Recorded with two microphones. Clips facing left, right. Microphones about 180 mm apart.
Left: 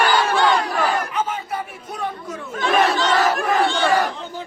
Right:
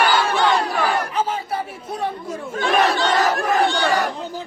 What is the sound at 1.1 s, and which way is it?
Chatter, 30° right (ahead or behind).